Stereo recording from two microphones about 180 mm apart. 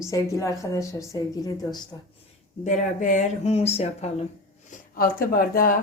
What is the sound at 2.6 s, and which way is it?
Speech, 45° left (ahead or behind).